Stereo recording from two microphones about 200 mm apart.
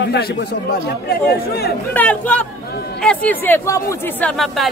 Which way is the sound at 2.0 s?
5° left (ahead or behind).